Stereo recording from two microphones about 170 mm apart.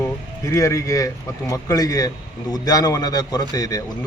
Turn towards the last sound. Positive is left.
turn(degrees=20)  # may be behind; listen again after turning